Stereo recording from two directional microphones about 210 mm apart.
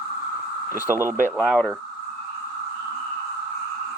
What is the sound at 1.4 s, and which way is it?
Speech, 5° left (ahead or behind).